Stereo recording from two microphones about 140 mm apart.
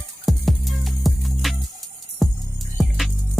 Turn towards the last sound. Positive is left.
turn(degrees=0)  # may be behind; listen again after turning